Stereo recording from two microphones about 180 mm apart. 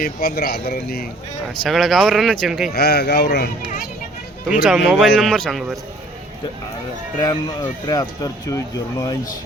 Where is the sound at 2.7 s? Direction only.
65° left (ahead or behind).